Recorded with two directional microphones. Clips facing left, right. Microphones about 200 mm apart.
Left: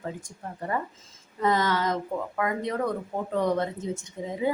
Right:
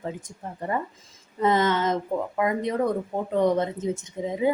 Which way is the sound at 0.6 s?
20° right (ahead or behind).